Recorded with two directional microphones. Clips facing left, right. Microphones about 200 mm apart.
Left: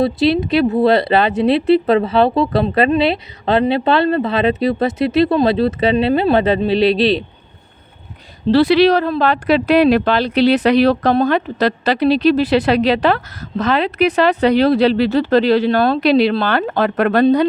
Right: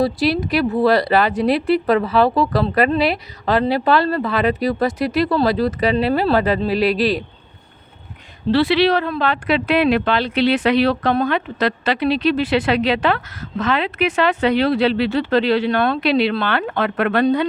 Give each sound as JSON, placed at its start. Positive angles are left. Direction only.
{"t": 0.0, "sound": "speech", "side_deg": 25}
{"t": 8.5, "sound": "speech", "side_deg": 45}